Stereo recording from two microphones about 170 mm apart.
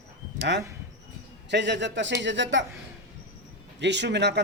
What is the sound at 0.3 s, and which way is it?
A man's voice, 90° right.